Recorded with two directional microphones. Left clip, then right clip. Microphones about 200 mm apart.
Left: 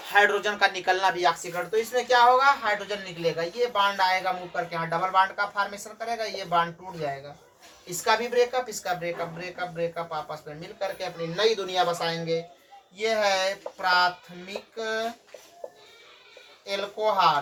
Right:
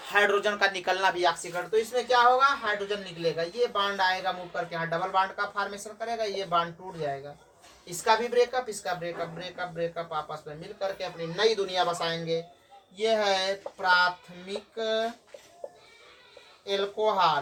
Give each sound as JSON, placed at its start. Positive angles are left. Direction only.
{"t": 0.0, "sound": "speech", "side_deg": -35}
{"t": 1.3, "sound": "a woman's voice", "side_deg": -20}
{"t": 15.6, "sound": "music", "side_deg": -10}
{"t": 16.6, "sound": "speech", "side_deg": -20}